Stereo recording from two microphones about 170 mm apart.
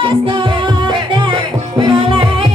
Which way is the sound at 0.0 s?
30° right (ahead or behind).